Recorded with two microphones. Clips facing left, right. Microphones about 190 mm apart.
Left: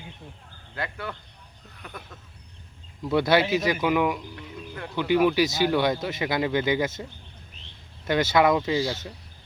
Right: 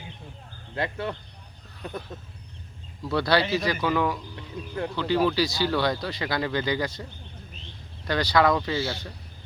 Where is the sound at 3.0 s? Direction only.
20° left (ahead or behind).